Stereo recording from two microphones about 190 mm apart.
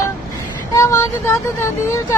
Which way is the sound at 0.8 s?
15° left (ahead or behind).